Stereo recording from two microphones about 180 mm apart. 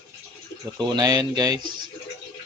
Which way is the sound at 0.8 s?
25° right (ahead or behind).